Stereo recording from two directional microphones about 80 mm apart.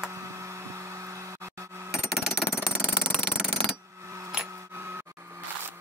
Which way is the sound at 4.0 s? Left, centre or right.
Right.